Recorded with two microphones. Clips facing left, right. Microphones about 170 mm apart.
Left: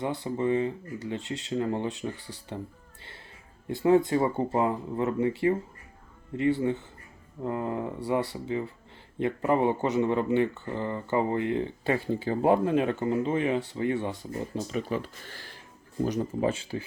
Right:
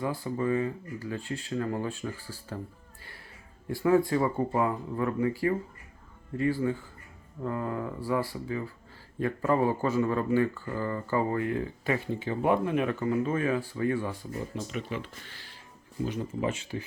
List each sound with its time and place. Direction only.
0.0 s speech: 25° left (ahead or behind)
3.7 s speech: 20° left (ahead or behind)
14.5 s speech: 35° left (ahead or behind)